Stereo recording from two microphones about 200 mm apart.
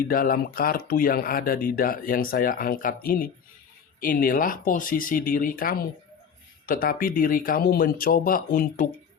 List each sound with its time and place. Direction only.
0.1 s speech: 45° left (ahead or behind)